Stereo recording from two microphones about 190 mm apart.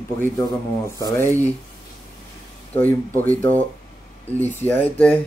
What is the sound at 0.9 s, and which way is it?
Speech, 15° left (ahead or behind).